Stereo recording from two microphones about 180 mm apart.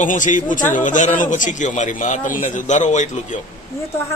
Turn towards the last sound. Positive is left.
turn(degrees=40)  # may be behind; listen again after turning